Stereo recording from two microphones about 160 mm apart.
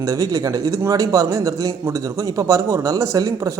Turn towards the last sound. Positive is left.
turn(degrees=-20)  # may be behind; listen again after turning